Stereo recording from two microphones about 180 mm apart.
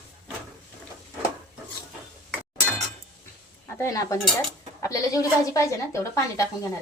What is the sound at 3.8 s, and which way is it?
A woman's voice, 15° left (ahead or behind).